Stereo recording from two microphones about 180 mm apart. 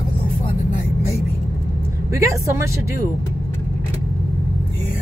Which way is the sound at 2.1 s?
15° right (ahead or behind).